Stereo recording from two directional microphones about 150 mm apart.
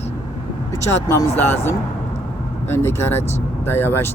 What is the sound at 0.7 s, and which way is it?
Speech, 20° left (ahead or behind).